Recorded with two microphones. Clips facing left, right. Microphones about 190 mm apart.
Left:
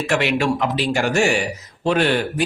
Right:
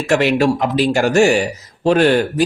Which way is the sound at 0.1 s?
40° right (ahead or behind).